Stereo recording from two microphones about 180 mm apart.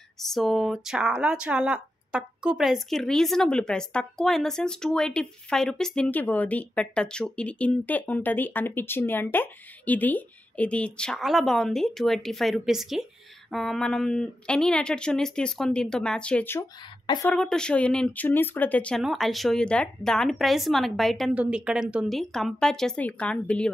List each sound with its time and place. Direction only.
0.3 s speech: centre (ahead or behind)
17.0 s a woman's voice: 25° left (ahead or behind)
17.3 s speech: 5° left (ahead or behind)